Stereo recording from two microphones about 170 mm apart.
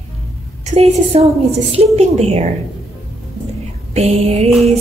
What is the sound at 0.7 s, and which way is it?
Music, 35° right (ahead or behind).